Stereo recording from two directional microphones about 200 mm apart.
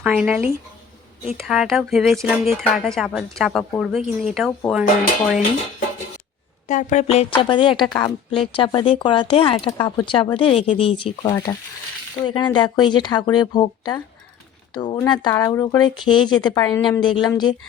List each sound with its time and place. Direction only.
0.0 s speech: 5° right (ahead or behind)
6.7 s speech: 35° left (ahead or behind); by 17.5 s 20° left (ahead or behind)